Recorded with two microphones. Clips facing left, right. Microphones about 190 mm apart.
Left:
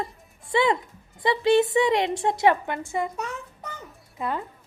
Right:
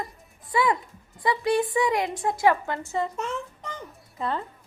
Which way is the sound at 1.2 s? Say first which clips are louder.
Left 4 dB; 25° left (ahead or behind).